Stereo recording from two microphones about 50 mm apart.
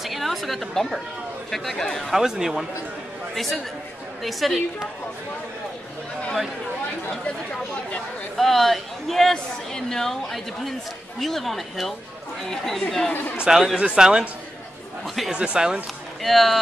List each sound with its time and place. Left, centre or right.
0.0 s a woman's voice: centre
2.1 s speech: centre
3.3 s a woman's voice: centre
8.4 s a woman's voice: centre
13.7 s speech: centre
15.0 s a woman's voice: centre
15.3 s speech: centre
16.2 s a woman's voice: centre